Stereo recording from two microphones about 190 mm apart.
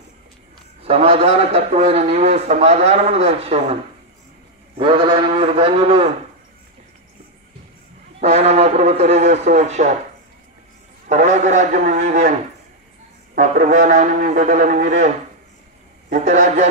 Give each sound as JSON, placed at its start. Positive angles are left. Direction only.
{"t": 0.8, "sound": "a man's voice", "side_deg": -30}
{"t": 4.7, "sound": "a man's voice", "side_deg": -30}
{"t": 8.2, "sound": "a man's voice", "side_deg": -35}
{"t": 11.1, "sound": "a man's voice", "side_deg": -40}
{"t": 13.3, "sound": "a man's voice", "side_deg": -40}
{"t": 16.1, "sound": "a man's voice", "side_deg": -40}